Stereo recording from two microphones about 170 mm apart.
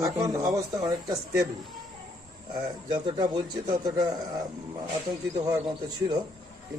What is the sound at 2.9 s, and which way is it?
Speech, 25° right (ahead or behind).